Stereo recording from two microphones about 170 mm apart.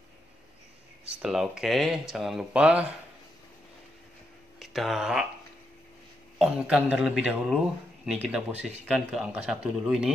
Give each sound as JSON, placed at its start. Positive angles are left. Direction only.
{"t": 1.2, "sound": "speech", "side_deg": -5}
{"t": 4.6, "sound": "speech", "side_deg": 0}
{"t": 6.3, "sound": "speech", "side_deg": -5}